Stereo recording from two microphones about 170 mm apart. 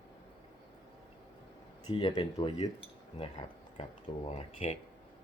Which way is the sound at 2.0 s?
30° left (ahead or behind).